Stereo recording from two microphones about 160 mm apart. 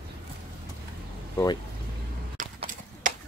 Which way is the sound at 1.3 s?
20° left (ahead or behind).